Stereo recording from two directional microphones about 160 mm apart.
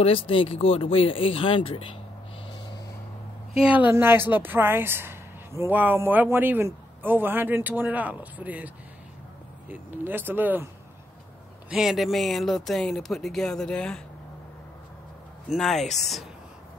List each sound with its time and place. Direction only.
0.0 s speech: 35° left (ahead or behind)
3.6 s a woman's voice: 10° right (ahead or behind)
11.7 s speech: 5° right (ahead or behind)
15.5 s speech: centre (ahead or behind)